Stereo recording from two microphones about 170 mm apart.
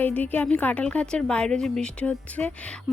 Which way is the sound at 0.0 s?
10° left (ahead or behind).